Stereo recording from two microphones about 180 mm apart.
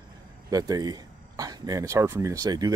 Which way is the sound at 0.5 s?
20° right (ahead or behind).